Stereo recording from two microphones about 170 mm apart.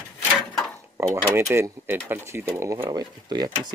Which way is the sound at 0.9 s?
15° right (ahead or behind).